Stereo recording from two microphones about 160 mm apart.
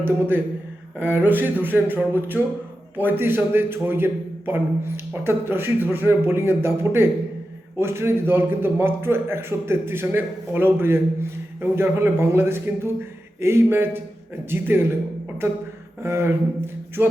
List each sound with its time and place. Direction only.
0.0 s a man's voice: 15° right (ahead or behind)
16.0 s a man's voice: 15° right (ahead or behind)